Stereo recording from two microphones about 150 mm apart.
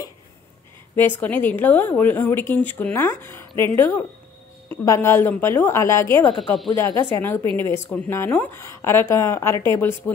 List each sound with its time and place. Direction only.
0.9 s a woman's voice: 15° left (ahead or behind)